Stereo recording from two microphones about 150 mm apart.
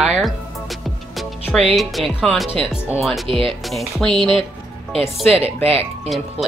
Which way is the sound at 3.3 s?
35° right (ahead or behind).